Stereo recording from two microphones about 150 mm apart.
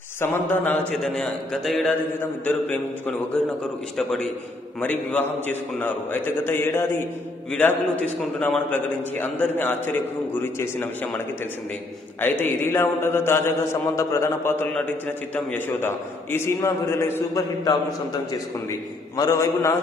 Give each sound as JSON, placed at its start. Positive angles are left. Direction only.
{"t": 0.2, "sound": "a man's voice", "side_deg": 15}
{"t": 0.9, "sound": "a man's voice", "side_deg": 0}
{"t": 12.2, "sound": "a man's voice", "side_deg": 15}
{"t": 19.1, "sound": "a man's voice", "side_deg": 25}